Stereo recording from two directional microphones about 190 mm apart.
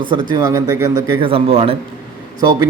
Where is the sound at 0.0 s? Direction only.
25° right (ahead or behind).